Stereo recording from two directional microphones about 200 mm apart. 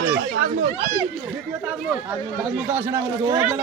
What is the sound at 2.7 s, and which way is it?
Speech, 10° right (ahead or behind).